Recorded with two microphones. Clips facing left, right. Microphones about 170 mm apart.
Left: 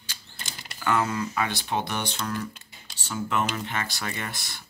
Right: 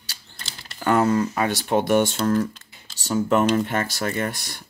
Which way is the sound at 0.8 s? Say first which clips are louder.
Right 7 dB; 40° right (ahead or behind).